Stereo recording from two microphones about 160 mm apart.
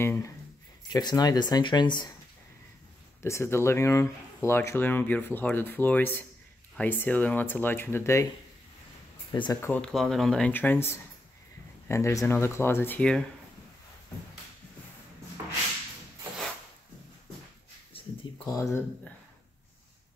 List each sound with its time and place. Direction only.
0.0 s a sound: 15° left (ahead or behind)
0.8 s speech: 25° left (ahead or behind)
3.2 s speech: 15° left (ahead or behind)
9.3 s speech: 25° left (ahead or behind)
9.6 s speech: 10° left (ahead or behind)
17.9 s a sound: 35° left (ahead or behind)
18.4 s speech: 20° left (ahead or behind)